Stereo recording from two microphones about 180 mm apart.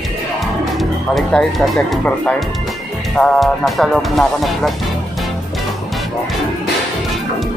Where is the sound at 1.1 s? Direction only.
5° left (ahead or behind).